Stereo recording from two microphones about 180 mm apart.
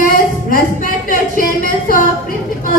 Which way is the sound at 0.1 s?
50° left (ahead or behind).